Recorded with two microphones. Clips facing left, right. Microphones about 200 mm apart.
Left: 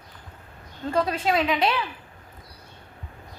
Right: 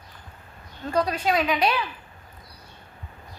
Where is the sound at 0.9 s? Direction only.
25° left (ahead or behind).